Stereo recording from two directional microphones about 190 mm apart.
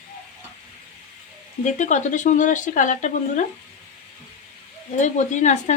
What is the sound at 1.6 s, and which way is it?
Speech, 40° left (ahead or behind).